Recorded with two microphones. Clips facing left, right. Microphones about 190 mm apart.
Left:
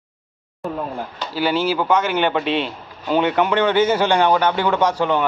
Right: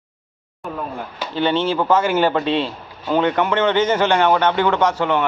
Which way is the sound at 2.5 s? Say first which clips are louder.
Right 1 dB; 25° right (ahead or behind).